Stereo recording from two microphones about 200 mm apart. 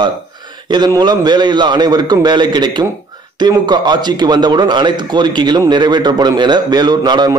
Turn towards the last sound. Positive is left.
turn(degrees=-20)  # may be behind; listen again after turning